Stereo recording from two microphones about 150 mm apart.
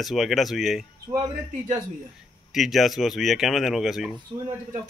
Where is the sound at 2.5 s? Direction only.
Centre (ahead or behind).